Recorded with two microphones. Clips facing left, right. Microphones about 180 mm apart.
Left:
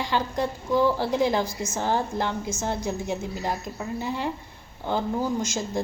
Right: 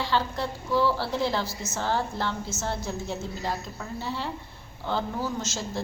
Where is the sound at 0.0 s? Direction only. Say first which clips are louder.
Left 2 dB; 15° left (ahead or behind).